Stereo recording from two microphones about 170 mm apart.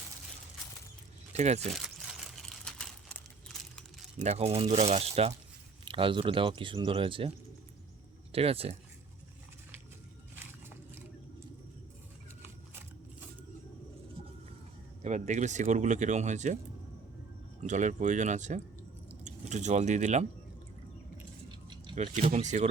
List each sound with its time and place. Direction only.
1.3 s speech: 40° right (ahead or behind)
2.4 s typewriter: 5° left (ahead or behind)
3.5 s a sound: centre (ahead or behind)
4.2 s speech: 40° right (ahead or behind)
15.0 s speech: 45° right (ahead or behind)
17.6 s speech: 45° right (ahead or behind)
21.9 s speech: 45° right (ahead or behind)